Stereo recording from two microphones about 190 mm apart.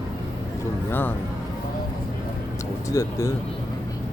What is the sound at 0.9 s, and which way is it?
Speech, 10° left (ahead or behind).